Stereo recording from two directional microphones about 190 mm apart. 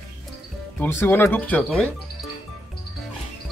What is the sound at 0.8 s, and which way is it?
Speech, 10° left (ahead or behind).